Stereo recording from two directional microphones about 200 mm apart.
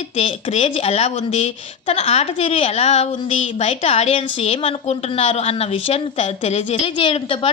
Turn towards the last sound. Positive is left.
turn(degrees=25)  # may be behind; listen again after turning